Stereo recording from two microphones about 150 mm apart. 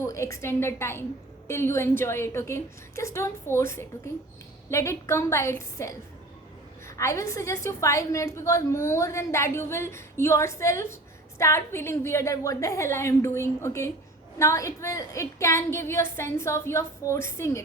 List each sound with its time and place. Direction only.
0.0 s a woman's voice: 20° left (ahead or behind)